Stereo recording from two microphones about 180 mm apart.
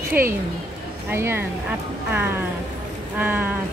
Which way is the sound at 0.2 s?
55° right (ahead or behind).